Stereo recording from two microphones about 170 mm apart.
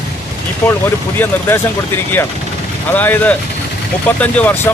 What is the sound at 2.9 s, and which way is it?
Speech, 10° left (ahead or behind).